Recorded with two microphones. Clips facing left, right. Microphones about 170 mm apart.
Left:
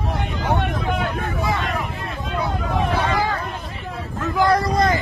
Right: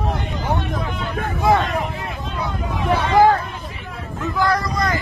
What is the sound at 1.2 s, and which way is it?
Hubbub, 60° right (ahead or behind).